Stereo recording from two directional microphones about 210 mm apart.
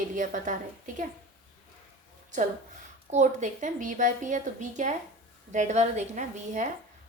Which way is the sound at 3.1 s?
35° right (ahead or behind).